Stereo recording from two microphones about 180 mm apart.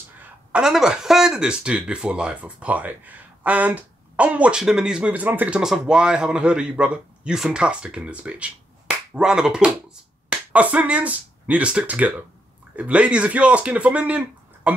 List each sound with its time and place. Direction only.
0.5 s speech: 5° right (ahead or behind)